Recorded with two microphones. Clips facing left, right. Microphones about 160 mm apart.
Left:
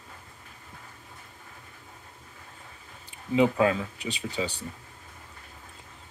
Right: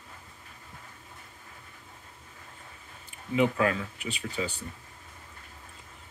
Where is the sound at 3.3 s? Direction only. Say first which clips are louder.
Left 3 dB; 25° left (ahead or behind).